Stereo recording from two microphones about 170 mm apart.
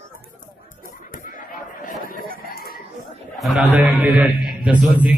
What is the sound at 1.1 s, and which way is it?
Chatter, 55° left (ahead or behind).